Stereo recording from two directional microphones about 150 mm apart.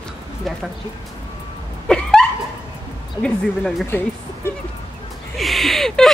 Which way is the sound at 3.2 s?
5° left (ahead or behind).